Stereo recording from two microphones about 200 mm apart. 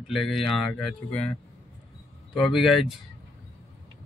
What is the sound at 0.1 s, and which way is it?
Speech, centre (ahead or behind).